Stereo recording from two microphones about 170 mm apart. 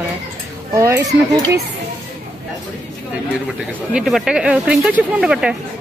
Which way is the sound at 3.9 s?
Centre (ahead or behind).